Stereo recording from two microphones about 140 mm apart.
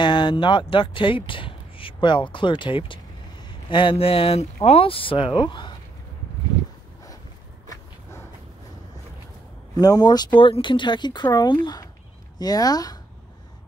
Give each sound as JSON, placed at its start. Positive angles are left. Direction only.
{"t": 0.0, "sound": "speech", "side_deg": 35}
{"t": 9.8, "sound": "speech", "side_deg": 25}